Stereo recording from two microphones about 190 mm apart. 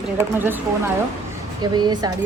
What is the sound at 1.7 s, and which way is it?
Speech, 20° right (ahead or behind).